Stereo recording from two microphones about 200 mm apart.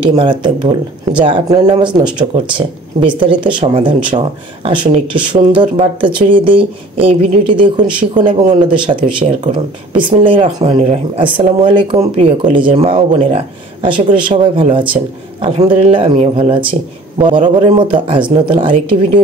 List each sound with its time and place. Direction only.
0.0 s speech: 25° right (ahead or behind)